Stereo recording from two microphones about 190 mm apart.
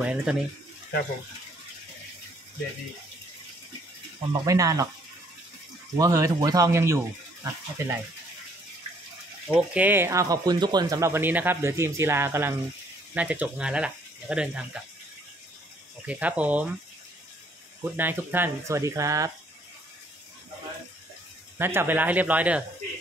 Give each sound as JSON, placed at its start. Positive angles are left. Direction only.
{"t": 0.0, "sound": "speech", "side_deg": -5}
{"t": 4.3, "sound": "speech", "side_deg": -20}
{"t": 5.9, "sound": "speech", "side_deg": -15}
{"t": 9.5, "sound": "speech", "side_deg": -10}
{"t": 16.1, "sound": "speech", "side_deg": -5}
{"t": 17.8, "sound": "speech", "side_deg": -10}
{"t": 21.5, "sound": "speech", "side_deg": -10}